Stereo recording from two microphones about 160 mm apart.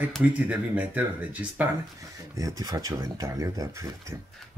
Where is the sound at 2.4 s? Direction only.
20° right (ahead or behind).